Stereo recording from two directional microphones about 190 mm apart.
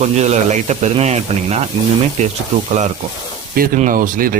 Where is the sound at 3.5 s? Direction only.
45° right (ahead or behind).